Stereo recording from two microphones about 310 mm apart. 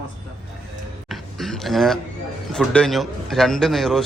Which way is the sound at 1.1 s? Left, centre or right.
Centre.